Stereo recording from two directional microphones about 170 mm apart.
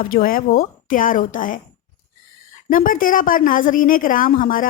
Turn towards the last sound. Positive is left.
turn(degrees=55)  # may be behind; listen again after turning